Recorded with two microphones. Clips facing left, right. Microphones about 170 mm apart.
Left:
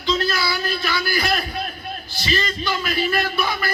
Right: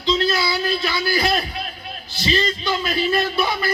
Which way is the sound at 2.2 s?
25° right (ahead or behind).